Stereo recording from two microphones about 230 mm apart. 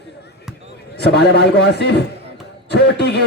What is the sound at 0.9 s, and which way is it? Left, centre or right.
A man's voice, left.